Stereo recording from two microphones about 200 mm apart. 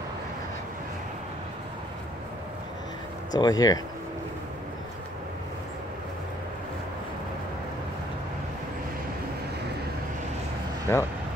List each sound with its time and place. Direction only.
3.3 s speech: 20° left (ahead or behind)
10.9 s speech: 10° left (ahead or behind)